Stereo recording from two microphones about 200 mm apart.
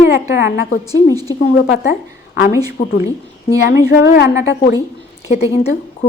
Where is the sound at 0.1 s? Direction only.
65° left (ahead or behind).